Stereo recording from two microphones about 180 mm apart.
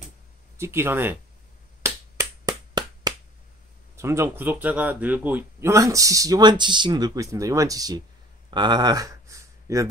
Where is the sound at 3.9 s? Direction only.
15° right (ahead or behind).